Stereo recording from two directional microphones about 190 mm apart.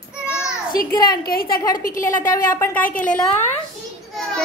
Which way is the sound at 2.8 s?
45° left (ahead or behind).